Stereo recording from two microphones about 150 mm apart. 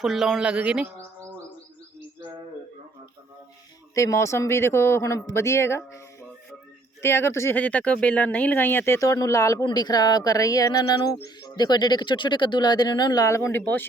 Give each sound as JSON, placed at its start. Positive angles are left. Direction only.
{"t": 0.0, "sound": "speech", "side_deg": 0}
{"t": 3.9, "sound": "speech", "side_deg": 20}
{"t": 7.0, "sound": "speech", "side_deg": 15}